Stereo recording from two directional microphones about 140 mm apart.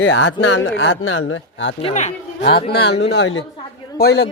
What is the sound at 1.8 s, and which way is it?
Speech, 55° left (ahead or behind).